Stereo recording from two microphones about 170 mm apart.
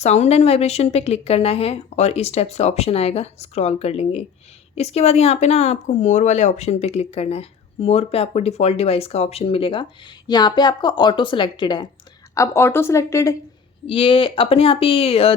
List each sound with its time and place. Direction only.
0.0 s a woman's voice: 40° left (ahead or behind)
12.3 s a woman's voice: 15° left (ahead or behind)
13.8 s speech: 30° left (ahead or behind)